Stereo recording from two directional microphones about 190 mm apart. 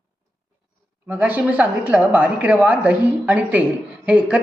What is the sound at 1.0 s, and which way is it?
A woman's voice, 10° right (ahead or behind).